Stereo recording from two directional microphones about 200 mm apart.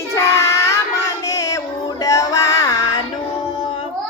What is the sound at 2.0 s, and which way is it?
Music, 15° left (ahead or behind).